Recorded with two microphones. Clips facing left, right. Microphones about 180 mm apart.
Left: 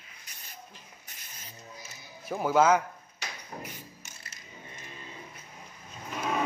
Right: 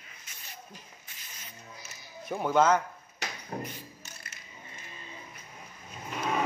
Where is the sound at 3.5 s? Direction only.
45° right (ahead or behind).